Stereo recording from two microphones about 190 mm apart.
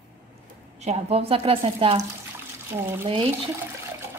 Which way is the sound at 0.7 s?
35° right (ahead or behind).